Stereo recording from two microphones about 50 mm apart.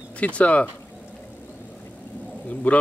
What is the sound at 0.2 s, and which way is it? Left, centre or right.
Speech, left.